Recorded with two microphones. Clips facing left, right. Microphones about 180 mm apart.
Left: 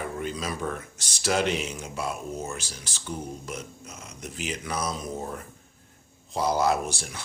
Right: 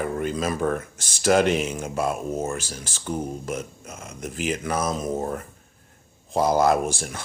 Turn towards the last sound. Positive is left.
turn(degrees=-50)  # may be behind; listen again after turning